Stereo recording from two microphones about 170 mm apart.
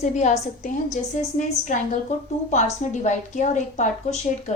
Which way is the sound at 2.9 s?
45° left (ahead or behind).